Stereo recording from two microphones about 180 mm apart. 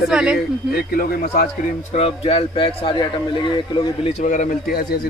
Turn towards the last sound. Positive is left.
turn(degrees=55)  # may be behind; listen again after turning